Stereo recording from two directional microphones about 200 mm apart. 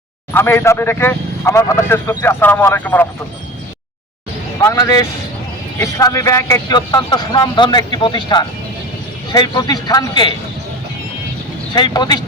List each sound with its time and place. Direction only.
0.3 s a man's voice: 10° left (ahead or behind)
4.6 s a man's voice: 15° left (ahead or behind)
11.7 s speech: 20° left (ahead or behind)